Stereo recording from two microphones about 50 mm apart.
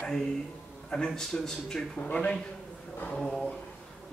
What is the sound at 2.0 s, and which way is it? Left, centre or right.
Speech, left.